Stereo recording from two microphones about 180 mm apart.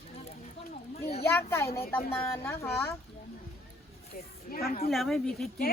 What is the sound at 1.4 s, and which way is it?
Speech, 15° left (ahead or behind).